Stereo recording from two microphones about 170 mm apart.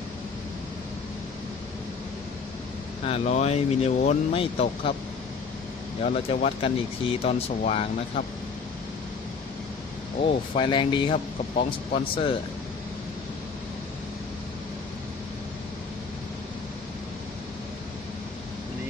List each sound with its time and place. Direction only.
3.1 s speech: 40° left (ahead or behind)
6.0 s speech: 35° left (ahead or behind)
10.5 s speech: 30° left (ahead or behind)